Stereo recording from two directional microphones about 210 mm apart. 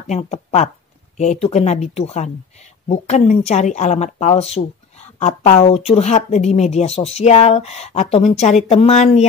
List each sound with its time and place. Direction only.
0.0 s speech: 30° left (ahead or behind)